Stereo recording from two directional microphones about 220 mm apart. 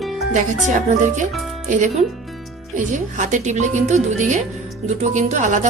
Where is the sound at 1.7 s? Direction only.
35° right (ahead or behind).